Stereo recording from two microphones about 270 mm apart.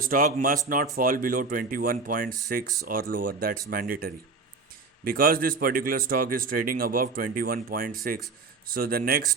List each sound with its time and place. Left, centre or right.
0.0 s speech: right